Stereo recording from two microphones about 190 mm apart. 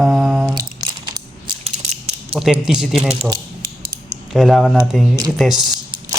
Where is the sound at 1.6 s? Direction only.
35° right (ahead or behind).